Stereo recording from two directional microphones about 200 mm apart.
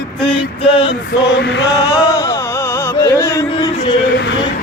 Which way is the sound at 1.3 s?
60° left (ahead or behind).